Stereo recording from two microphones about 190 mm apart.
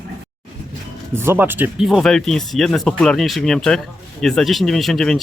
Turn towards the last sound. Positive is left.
turn(degrees=0)  # may be behind; listen again after turning